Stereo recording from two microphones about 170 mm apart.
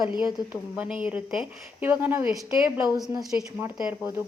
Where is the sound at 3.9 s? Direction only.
15° right (ahead or behind).